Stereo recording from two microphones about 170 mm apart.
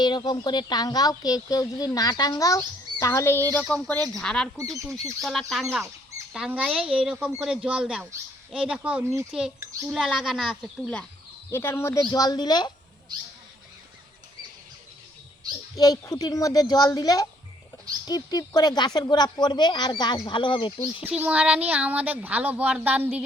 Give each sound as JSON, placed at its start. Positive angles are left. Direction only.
{"t": 0.0, "sound": "speech", "side_deg": 25}
{"t": 15.7, "sound": "speech", "side_deg": 20}
{"t": 21.0, "sound": "speech", "side_deg": -10}